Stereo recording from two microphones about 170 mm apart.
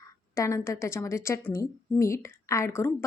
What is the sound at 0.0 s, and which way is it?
A woman's voice, 15° left (ahead or behind).